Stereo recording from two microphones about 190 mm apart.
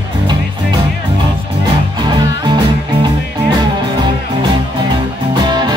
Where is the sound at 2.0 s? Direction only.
25° right (ahead or behind).